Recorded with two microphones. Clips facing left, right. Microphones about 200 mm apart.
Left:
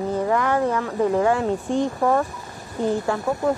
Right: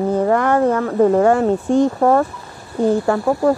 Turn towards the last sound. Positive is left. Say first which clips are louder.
# right 6 dB
turn(degrees=-40)  # may be behind; listen again after turning